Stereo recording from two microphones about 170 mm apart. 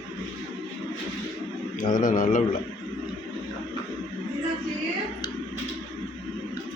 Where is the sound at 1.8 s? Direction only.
50° left (ahead or behind).